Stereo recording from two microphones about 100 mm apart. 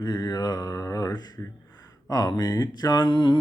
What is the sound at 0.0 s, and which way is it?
Mantra, 45° left (ahead or behind).